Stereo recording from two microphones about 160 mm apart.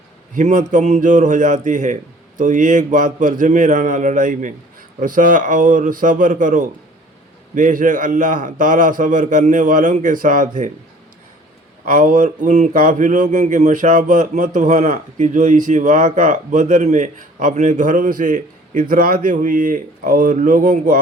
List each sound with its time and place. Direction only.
0.3 s a man's voice: 55° right (ahead or behind)
11.9 s speech: 55° right (ahead or behind)